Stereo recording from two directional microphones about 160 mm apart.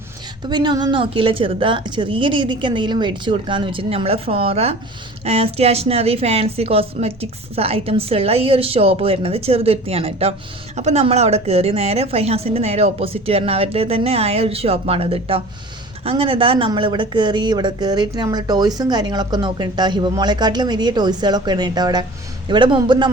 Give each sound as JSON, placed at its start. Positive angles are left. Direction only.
{"t": 0.4, "sound": "a woman's voice", "side_deg": -25}